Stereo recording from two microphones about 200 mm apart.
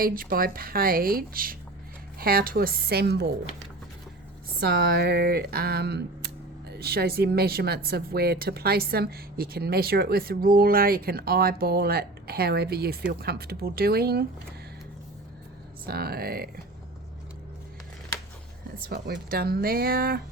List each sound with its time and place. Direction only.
0.0 s speech: 45° right (ahead or behind)
4.6 s speech: 50° right (ahead or behind)
15.9 s speech: 50° right (ahead or behind)
18.9 s speech: 50° right (ahead or behind)